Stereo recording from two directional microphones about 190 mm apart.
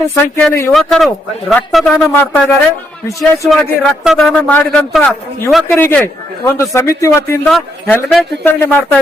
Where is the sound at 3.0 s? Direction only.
15° left (ahead or behind).